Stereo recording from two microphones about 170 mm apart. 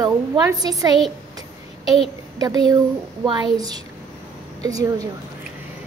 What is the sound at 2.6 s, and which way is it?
Speech, 25° right (ahead or behind).